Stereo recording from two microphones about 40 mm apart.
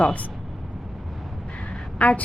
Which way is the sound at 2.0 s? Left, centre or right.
Left.